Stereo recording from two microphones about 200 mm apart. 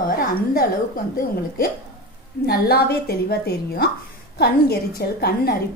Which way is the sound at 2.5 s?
50° left (ahead or behind).